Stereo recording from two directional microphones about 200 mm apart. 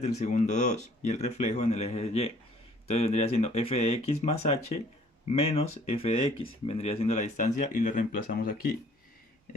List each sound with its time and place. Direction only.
0.0 s speech: 35° left (ahead or behind)